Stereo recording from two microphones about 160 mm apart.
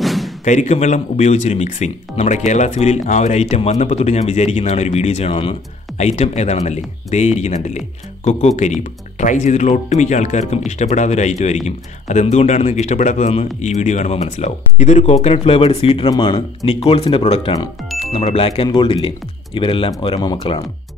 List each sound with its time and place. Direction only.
0.0 s a sound: centre (ahead or behind)
0.5 s speech: 45° left (ahead or behind)
16.1 s speech: 25° left (ahead or behind)